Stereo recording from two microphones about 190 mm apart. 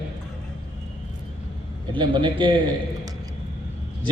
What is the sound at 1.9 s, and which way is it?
Speech, 25° right (ahead or behind).